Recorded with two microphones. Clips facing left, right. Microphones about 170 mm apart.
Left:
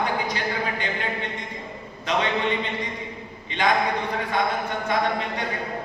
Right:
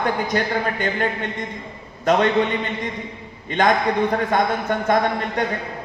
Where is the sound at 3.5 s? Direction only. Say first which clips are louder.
Right 4 dB; 50° right (ahead or behind).